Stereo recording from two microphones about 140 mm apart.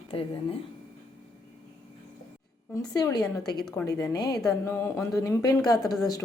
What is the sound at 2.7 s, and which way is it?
A woman's voice, 30° left (ahead or behind).